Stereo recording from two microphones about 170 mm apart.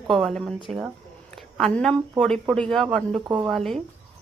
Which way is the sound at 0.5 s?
30° right (ahead or behind).